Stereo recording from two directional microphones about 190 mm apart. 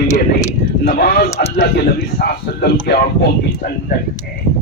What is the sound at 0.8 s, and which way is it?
Speech, 55° left (ahead or behind).